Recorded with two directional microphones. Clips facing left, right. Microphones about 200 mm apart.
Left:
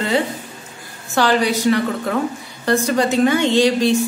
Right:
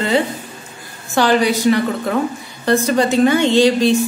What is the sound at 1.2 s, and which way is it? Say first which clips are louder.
Speech: right 2 dB; 15° right (ahead or behind).